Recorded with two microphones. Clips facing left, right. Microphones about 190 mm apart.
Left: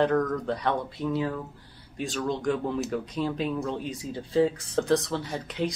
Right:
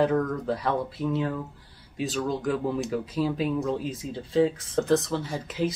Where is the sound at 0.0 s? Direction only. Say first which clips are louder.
Even; 5° right (ahead or behind).